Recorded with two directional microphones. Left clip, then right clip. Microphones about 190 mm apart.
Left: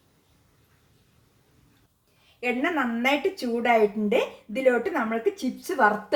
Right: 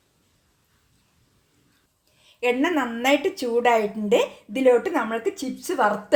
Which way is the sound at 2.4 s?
50° right (ahead or behind).